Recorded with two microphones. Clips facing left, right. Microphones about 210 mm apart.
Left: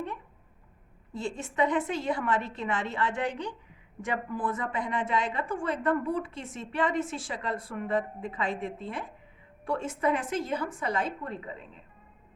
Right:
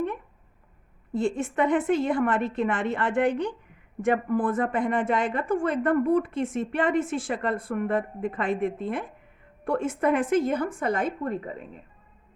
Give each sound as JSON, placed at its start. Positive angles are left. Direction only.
{"t": 1.1, "sound": "a woman's voice", "side_deg": -55}